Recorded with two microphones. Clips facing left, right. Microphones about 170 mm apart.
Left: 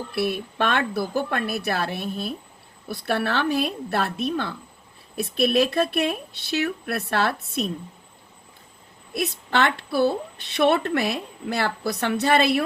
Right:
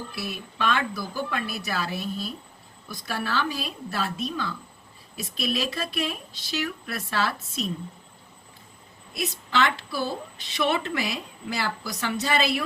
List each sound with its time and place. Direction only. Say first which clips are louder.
0.1 s a woman's voice: left 10 dB; 60° left (ahead or behind)
9.1 s a woman's voice: left 3 dB; 60° left (ahead or behind)